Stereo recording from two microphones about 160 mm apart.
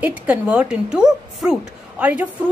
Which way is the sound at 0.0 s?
10° right (ahead or behind).